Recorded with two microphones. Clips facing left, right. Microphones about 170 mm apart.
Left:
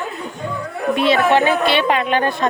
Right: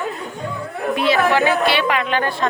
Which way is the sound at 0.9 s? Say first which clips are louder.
Left 2 dB; 25° left (ahead or behind).